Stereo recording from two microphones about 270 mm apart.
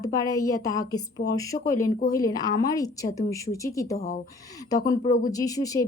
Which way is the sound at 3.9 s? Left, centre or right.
Left.